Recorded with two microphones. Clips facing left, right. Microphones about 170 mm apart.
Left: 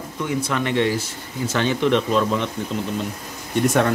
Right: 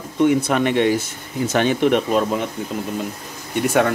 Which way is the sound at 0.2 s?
55° right (ahead or behind).